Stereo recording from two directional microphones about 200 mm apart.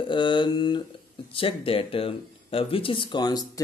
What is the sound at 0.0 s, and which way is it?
Speech, 25° left (ahead or behind).